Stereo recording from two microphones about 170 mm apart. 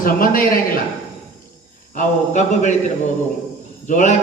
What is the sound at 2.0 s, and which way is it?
Speech, 45° left (ahead or behind).